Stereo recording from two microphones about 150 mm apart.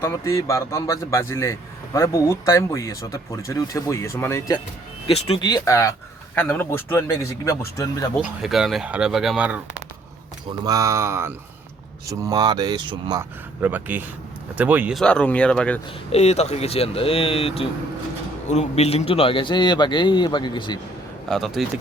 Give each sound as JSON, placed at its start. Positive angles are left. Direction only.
{"t": 0.0, "sound": "a man's voice", "side_deg": 20}
{"t": 5.0, "sound": "a man's voice", "side_deg": 40}
{"t": 5.4, "sound": "a man's voice", "side_deg": 25}
{"t": 8.2, "sound": "speech", "side_deg": 0}
{"t": 10.6, "sound": "speech", "side_deg": -25}
{"t": 13.1, "sound": "speech", "side_deg": -15}
{"t": 14.9, "sound": "speech", "side_deg": 5}
{"t": 16.1, "sound": "a man's voice", "side_deg": 45}
{"t": 21.2, "sound": "speech", "side_deg": 0}